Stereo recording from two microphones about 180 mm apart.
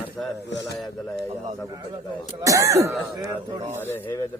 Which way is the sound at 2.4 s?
15° right (ahead or behind).